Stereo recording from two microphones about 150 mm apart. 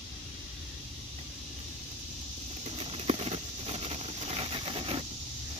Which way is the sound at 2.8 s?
40° right (ahead or behind).